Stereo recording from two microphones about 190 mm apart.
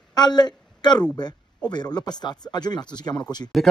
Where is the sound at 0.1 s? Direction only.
20° left (ahead or behind).